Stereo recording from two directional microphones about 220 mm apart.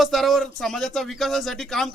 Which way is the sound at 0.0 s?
Centre (ahead or behind).